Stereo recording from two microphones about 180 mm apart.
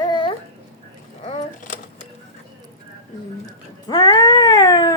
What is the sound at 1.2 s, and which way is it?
Speech, 35° left (ahead or behind).